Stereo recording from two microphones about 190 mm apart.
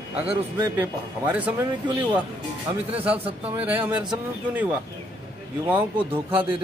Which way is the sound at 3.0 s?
10° right (ahead or behind).